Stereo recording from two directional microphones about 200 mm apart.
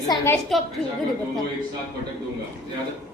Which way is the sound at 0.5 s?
Centre (ahead or behind).